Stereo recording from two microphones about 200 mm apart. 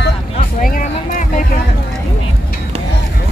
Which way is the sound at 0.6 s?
45° left (ahead or behind).